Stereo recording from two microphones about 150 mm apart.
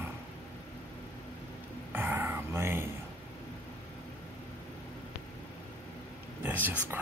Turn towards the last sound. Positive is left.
turn(degrees=-10)  # may be behind; listen again after turning